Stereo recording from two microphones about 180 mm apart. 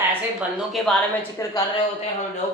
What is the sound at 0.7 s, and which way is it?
Speech, centre (ahead or behind).